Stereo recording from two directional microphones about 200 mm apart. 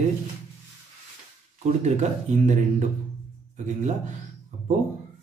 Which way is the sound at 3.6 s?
35° right (ahead or behind).